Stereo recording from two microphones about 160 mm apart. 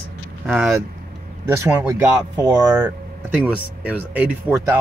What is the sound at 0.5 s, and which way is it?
Speech, 5° right (ahead or behind).